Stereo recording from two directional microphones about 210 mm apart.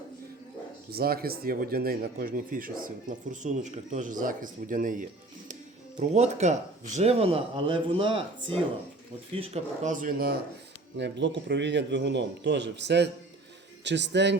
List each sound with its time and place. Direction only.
0.9 s speech: 45° right (ahead or behind)
10.9 s a man's voice: 55° right (ahead or behind)